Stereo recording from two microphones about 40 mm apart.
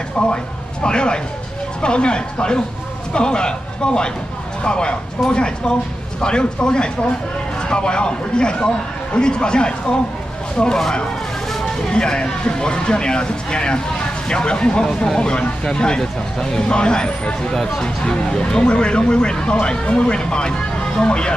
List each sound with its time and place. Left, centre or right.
0.2 s a man's voice: left
11.9 s speech: left